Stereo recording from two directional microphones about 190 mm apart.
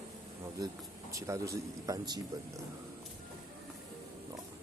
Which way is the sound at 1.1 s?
15° right (ahead or behind).